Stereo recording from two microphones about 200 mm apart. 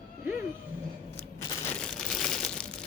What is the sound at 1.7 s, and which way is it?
Crumpling, 5° left (ahead or behind).